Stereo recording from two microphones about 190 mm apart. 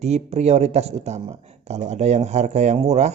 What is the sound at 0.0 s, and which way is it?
Speech, 35° right (ahead or behind).